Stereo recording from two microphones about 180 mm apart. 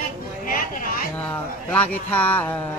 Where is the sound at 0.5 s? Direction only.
55° left (ahead or behind).